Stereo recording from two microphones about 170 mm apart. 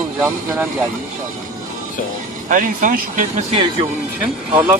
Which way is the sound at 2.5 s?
55° right (ahead or behind).